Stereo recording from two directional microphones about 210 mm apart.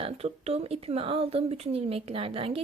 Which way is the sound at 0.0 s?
30° right (ahead or behind).